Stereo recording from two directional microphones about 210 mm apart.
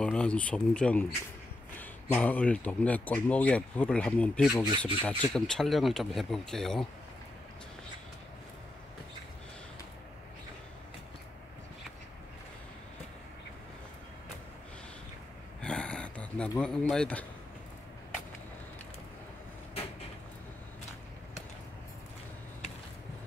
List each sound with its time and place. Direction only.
0.0 s speech: 5° left (ahead or behind)
4.6 s speech: 25° right (ahead or behind)
5.0 s speech: 5° left (ahead or behind)
15.6 s a sound: 5° left (ahead or behind)
16.9 s speech: 5° left (ahead or behind)